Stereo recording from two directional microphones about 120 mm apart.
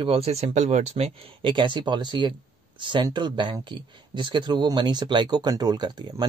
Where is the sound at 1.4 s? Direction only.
40° right (ahead or behind).